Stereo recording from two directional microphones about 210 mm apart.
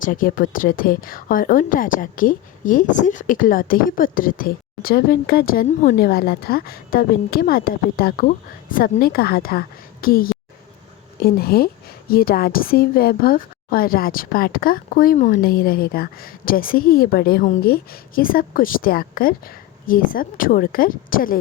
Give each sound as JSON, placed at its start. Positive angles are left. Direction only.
{"t": 0.0, "sound": "a woman's voice", "side_deg": 40}